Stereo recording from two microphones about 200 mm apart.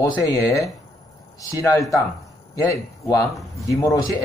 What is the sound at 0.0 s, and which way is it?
A man's voice, 15° left (ahead or behind).